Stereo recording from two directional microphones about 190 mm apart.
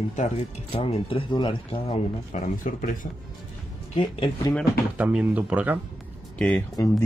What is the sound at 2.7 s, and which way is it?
Speech, 45° left (ahead or behind).